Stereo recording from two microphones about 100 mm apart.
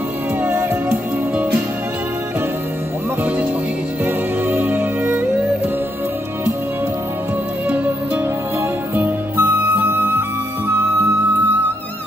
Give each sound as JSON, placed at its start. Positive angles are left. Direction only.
{"t": 0.4, "sound": "music", "side_deg": -20}
{"t": 4.0, "sound": "music", "side_deg": -20}
{"t": 7.6, "sound": "music", "side_deg": -15}
{"t": 8.9, "sound": "music", "side_deg": -20}